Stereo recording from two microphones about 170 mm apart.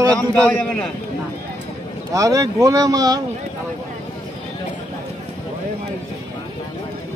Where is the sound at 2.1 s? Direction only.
20° right (ahead or behind).